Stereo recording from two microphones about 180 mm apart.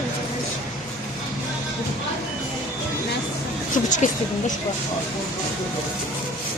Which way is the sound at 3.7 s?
45° left (ahead or behind).